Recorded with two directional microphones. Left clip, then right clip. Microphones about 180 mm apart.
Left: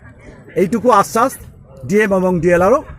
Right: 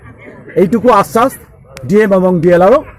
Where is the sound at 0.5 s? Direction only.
15° left (ahead or behind).